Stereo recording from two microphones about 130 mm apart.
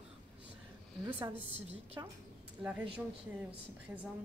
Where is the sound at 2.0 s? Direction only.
20° right (ahead or behind).